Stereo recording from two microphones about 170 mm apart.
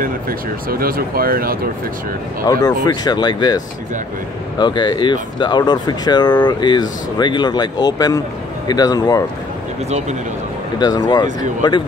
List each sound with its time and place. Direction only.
0.0 s speech: 60° right (ahead or behind)
2.6 s speech: 25° left (ahead or behind)
9.8 s speech: 40° right (ahead or behind)
10.8 s speech: 25° left (ahead or behind)